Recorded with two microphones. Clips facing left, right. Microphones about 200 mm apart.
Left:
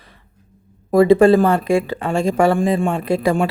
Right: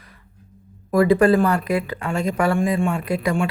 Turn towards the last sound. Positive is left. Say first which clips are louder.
# left 4 dB
turn(degrees=30)  # may be behind; listen again after turning